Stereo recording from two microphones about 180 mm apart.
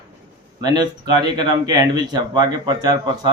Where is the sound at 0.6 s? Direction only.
25° right (ahead or behind).